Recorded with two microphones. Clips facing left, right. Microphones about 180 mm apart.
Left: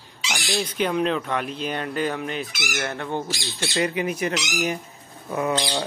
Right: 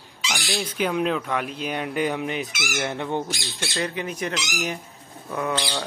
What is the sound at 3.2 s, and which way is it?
Speech, 5° left (ahead or behind).